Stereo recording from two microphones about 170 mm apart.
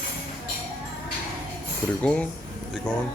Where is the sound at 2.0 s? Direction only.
5° left (ahead or behind).